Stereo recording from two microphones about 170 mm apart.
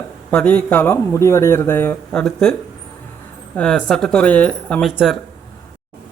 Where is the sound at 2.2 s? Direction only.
5° left (ahead or behind).